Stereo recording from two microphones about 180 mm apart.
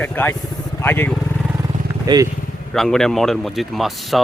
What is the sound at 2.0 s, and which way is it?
Speech, 20° right (ahead or behind).